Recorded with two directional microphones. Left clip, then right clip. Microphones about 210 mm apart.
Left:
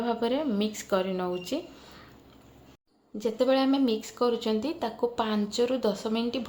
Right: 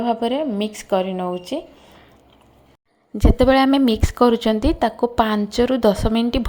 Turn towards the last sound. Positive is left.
turn(degrees=-35)  # may be behind; listen again after turning